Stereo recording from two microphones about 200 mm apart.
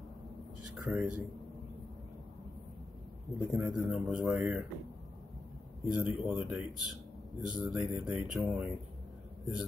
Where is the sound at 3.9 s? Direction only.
5° right (ahead or behind).